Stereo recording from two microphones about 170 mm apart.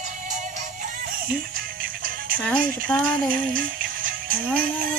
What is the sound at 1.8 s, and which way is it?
Music, 55° right (ahead or behind).